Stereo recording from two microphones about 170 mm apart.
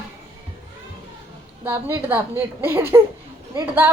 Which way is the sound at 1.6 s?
15° right (ahead or behind).